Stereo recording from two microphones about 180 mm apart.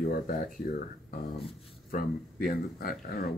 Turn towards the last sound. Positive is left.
turn(degrees=55)  # may be behind; listen again after turning